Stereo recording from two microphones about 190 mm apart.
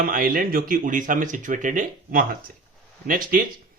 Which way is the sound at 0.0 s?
45° right (ahead or behind).